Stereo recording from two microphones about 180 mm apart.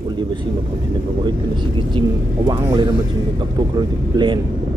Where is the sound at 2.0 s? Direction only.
25° right (ahead or behind).